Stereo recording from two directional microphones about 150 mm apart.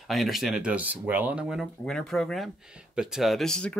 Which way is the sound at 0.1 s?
Centre (ahead or behind).